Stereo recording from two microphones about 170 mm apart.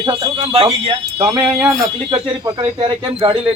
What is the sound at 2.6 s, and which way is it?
Speech, 35° right (ahead or behind).